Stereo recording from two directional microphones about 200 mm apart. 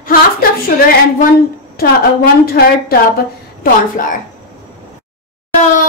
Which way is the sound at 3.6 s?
40° left (ahead or behind).